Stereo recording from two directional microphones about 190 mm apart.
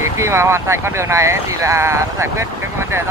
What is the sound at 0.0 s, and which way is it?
Speech, 15° right (ahead or behind).